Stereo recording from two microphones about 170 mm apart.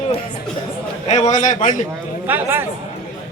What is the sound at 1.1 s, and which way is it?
Speech, 45° left (ahead or behind).